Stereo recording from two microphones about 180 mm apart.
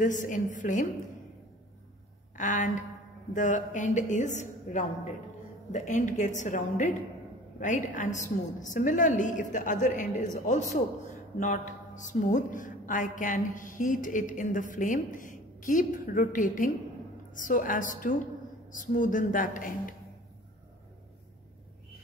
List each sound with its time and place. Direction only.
0.0 s speech: 45° left (ahead or behind)
2.3 s speech: 45° left (ahead or behind)